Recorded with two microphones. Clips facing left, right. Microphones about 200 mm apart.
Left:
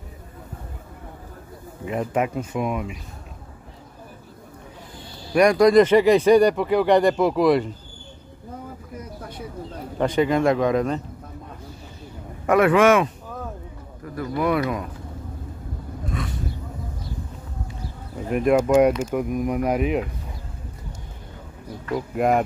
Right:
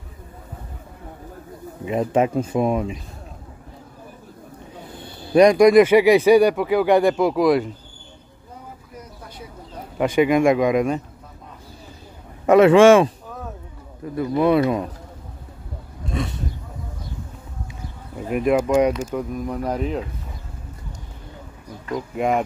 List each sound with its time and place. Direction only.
1.9 s speech: 25° right (ahead or behind)
4.9 s a sound: 55° right (ahead or behind)
5.3 s speech: 20° right (ahead or behind); by 7.7 s centre (ahead or behind)
9.9 s speech: 10° right (ahead or behind)
12.4 s speech: 25° right (ahead or behind)
16.1 s roaring cats: 25° right (ahead or behind)
18.3 s speech: 5° right (ahead or behind)
21.9 s speech: centre (ahead or behind)